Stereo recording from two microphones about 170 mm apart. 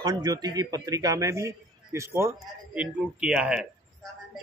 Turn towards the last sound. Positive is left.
turn(degrees=-5)  # may be behind; listen again after turning